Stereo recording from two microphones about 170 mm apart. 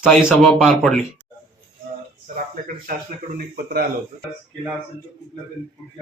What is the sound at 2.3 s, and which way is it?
Speech, 55° right (ahead or behind).